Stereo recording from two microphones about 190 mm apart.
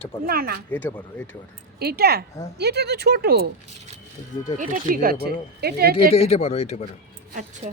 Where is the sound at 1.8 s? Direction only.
55° right (ahead or behind).